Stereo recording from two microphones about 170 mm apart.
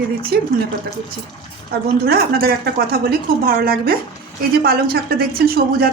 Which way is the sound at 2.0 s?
65° right (ahead or behind).